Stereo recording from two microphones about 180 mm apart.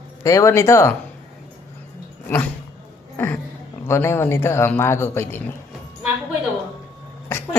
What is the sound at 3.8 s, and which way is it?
Speech, 15° left (ahead or behind).